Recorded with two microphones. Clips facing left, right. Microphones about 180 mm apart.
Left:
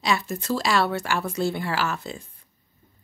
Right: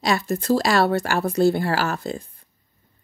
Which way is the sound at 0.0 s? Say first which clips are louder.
Right 3 dB; 40° right (ahead or behind).